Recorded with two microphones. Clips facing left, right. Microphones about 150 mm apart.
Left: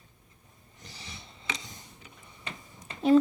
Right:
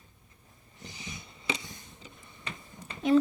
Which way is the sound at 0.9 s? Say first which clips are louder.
Right 3 dB; 35° left (ahead or behind).